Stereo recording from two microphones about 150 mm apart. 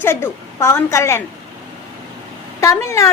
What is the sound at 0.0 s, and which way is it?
A woman's voice, 15° left (ahead or behind).